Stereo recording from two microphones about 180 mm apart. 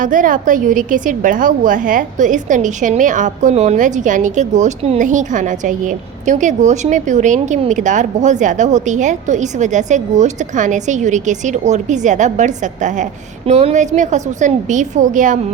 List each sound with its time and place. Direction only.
0.0 s a woman's voice: 45° right (ahead or behind)